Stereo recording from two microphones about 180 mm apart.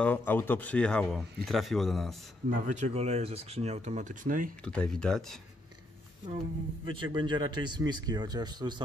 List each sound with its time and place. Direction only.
0.0 s speech: 10° left (ahead or behind)
2.5 s speech: 45° right (ahead or behind)
4.6 s speech: 5° left (ahead or behind)
6.2 s a man's voice: 25° right (ahead or behind)